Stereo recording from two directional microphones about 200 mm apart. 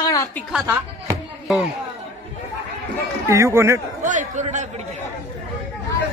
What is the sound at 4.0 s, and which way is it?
Speech, 40° right (ahead or behind).